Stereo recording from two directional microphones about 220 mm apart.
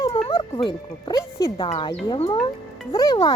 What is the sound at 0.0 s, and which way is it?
Speech, 25° left (ahead or behind).